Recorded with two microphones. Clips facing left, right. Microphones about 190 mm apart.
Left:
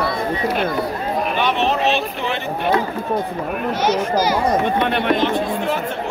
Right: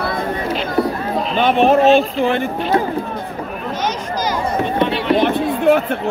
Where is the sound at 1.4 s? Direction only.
50° right (ahead or behind).